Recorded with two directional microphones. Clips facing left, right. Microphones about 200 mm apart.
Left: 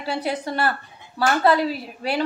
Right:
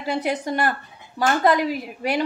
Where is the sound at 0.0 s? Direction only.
15° right (ahead or behind).